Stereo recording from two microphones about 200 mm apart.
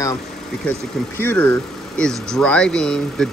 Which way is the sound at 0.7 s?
10° left (ahead or behind).